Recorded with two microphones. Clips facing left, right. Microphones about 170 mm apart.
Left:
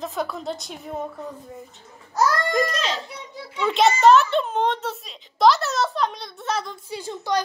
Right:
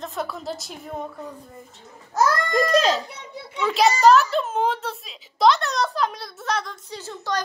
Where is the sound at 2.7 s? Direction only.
40° right (ahead or behind).